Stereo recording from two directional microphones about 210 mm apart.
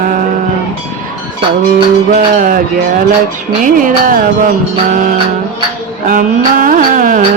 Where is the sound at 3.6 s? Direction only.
40° right (ahead or behind).